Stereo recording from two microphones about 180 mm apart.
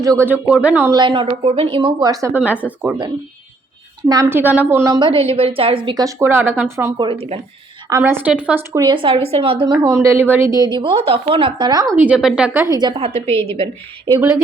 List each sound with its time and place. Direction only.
0.0 s speech: 15° right (ahead or behind)
0.9 s a woman's voice: 25° right (ahead or behind); by 2.9 s 10° right (ahead or behind)
4.1 s a woman's voice: 15° right (ahead or behind)
7.0 s a woman's voice: 30° right (ahead or behind)
7.9 s a woman's voice: 15° right (ahead or behind)
9.8 s a woman's voice: 15° right (ahead or behind)
11.9 s speech: 5° right (ahead or behind)
12.6 s a woman's voice: 20° right (ahead or behind)
12.9 s a woman's voice: 35° right (ahead or behind)
13.3 s a woman's voice: 15° left (ahead or behind)